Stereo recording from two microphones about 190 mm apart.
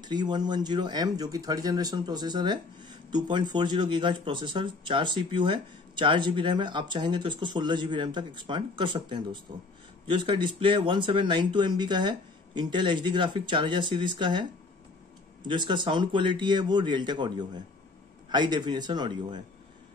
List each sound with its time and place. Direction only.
0.0 s speech: 20° right (ahead or behind)